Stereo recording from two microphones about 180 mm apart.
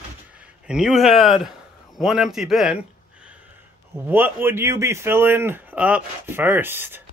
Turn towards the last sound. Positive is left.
turn(degrees=-10)  # may be behind; listen again after turning